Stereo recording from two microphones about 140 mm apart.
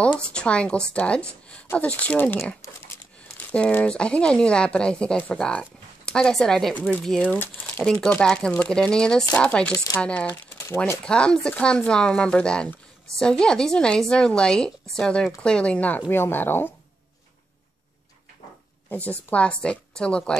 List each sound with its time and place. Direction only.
0.3 s speech: 5° left (ahead or behind)
18.9 s speech: 10° left (ahead or behind)